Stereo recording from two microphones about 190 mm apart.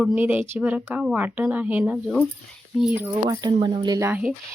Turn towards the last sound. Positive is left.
turn(degrees=-10)  # may be behind; listen again after turning